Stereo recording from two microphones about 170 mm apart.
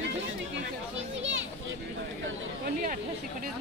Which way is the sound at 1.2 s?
90° right.